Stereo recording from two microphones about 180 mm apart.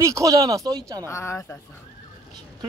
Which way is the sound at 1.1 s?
15° left (ahead or behind).